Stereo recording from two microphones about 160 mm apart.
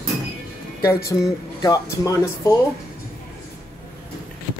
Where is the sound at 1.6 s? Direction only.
20° left (ahead or behind).